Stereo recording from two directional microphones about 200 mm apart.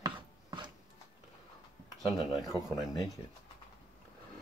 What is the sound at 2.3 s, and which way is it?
Speech, centre (ahead or behind).